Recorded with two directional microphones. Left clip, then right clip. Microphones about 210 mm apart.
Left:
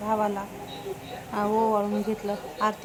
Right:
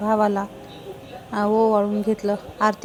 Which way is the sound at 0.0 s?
25° right (ahead or behind).